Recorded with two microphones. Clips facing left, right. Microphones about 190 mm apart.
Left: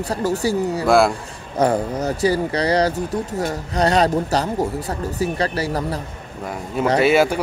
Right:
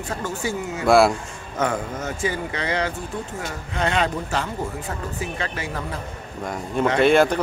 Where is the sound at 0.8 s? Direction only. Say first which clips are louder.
Even; centre (ahead or behind).